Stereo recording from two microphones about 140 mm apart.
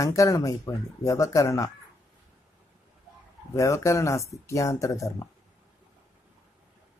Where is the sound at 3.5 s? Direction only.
20° left (ahead or behind).